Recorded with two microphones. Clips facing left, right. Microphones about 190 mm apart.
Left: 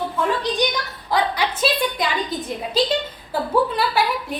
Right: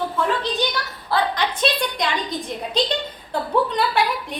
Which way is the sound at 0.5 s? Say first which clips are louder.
Left 2 dB; 15° left (ahead or behind).